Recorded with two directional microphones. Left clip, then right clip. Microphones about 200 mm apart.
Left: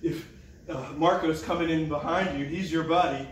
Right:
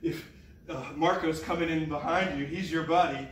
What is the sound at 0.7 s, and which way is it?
A man's voice, centre (ahead or behind).